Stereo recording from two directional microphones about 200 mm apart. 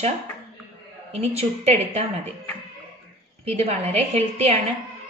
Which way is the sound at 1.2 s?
30° right (ahead or behind).